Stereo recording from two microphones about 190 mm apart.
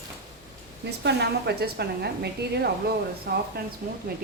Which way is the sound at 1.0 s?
60° right (ahead or behind).